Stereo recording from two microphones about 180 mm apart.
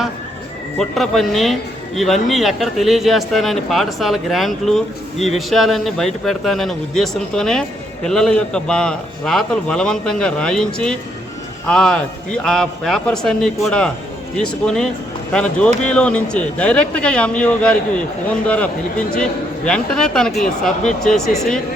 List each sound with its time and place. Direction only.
0.8 s a man's voice: centre (ahead or behind)